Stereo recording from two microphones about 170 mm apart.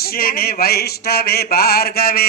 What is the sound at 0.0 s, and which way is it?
Mantra, 60° left (ahead or behind).